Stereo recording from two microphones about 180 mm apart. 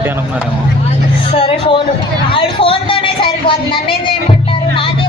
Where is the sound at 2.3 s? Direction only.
30° left (ahead or behind).